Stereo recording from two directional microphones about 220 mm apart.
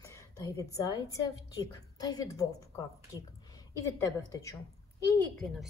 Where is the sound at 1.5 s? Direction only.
15° left (ahead or behind).